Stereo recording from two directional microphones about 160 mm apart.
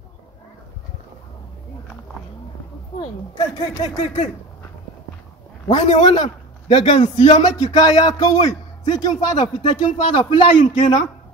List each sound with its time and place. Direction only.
3.0 s a man's voice: 25° left (ahead or behind)
4.0 s speech: 45° left (ahead or behind)
5.8 s speech: 45° left (ahead or behind)
6.0 s a man's voice: 35° left (ahead or behind)
7.5 s a man's voice: 25° left (ahead or behind)